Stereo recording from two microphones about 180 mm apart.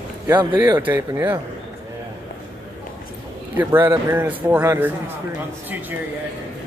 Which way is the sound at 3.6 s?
15° right (ahead or behind).